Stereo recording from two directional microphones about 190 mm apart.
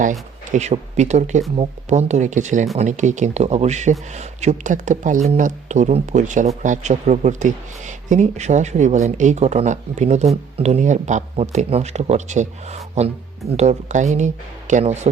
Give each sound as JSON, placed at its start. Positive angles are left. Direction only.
{"t": 0.5, "sound": "speech", "side_deg": -35}